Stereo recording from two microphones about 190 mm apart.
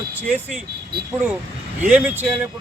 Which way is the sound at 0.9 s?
55° right (ahead or behind).